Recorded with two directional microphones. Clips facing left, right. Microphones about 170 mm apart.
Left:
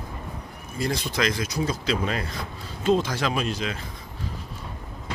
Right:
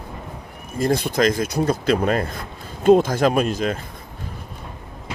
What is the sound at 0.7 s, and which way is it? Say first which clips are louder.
Speech: right 7 dB; 50° right (ahead or behind).